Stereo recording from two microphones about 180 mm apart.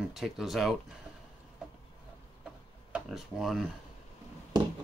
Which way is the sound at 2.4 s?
5° right (ahead or behind).